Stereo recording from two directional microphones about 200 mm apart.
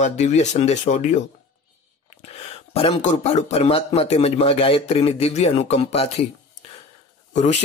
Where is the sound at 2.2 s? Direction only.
30° left (ahead or behind).